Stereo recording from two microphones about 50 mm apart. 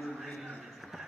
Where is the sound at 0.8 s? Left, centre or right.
Centre.